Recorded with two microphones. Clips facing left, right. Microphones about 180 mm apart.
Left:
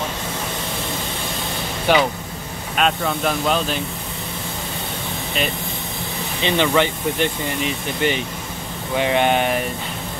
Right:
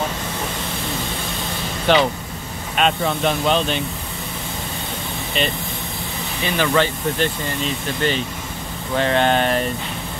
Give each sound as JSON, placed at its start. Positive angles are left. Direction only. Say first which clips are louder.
{"t": 1.9, "sound": "speech", "louder": "right 1 dB", "side_deg": 10}
{"t": 6.4, "sound": "speech", "louder": "left 1 dB", "side_deg": 20}